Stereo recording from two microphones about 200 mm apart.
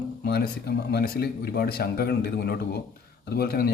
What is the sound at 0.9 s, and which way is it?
A man's voice, 50° left (ahead or behind).